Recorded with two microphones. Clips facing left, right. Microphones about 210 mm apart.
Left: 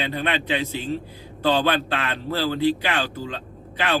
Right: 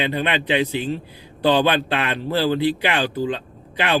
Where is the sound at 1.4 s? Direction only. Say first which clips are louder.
Right 3 dB; 15° right (ahead or behind).